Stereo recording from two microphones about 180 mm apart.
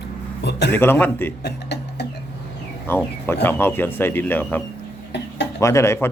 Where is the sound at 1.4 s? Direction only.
65° left (ahead or behind).